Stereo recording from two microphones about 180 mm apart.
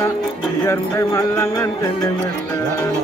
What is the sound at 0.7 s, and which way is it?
Speech, 15° left (ahead or behind).